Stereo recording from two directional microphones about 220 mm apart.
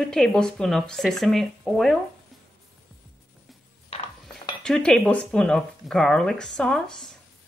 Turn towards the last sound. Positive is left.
turn(degrees=0)  # may be behind; listen again after turning